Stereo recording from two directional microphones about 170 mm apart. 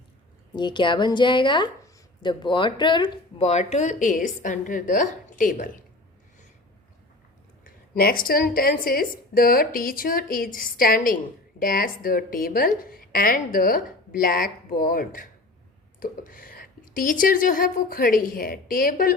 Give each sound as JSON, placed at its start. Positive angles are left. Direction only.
{"t": 0.5, "sound": "a woman's voice", "side_deg": 25}
{"t": 7.6, "sound": "a woman's voice", "side_deg": 60}